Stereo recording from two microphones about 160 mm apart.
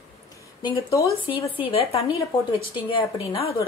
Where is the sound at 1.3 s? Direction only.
35° left (ahead or behind).